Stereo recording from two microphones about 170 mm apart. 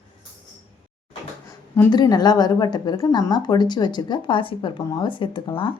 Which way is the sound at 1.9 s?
25° left (ahead or behind).